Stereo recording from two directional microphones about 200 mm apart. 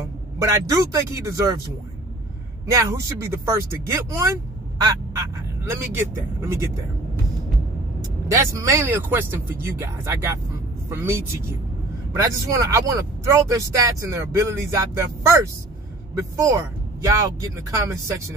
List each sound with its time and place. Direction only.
0.4 s speech: 15° right (ahead or behind)
2.6 s speech: 15° right (ahead or behind)
5.7 s speech: 10° right (ahead or behind)
8.3 s speech: 15° right (ahead or behind)